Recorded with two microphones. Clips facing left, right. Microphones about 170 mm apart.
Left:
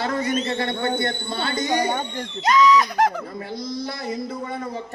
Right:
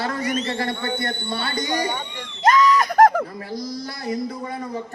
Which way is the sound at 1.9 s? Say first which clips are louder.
Left 4 dB; 45° left (ahead or behind).